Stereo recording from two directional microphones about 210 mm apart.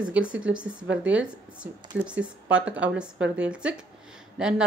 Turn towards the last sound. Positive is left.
turn(degrees=-5)  # may be behind; listen again after turning